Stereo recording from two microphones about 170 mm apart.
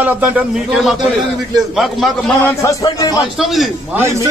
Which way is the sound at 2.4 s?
20° left (ahead or behind).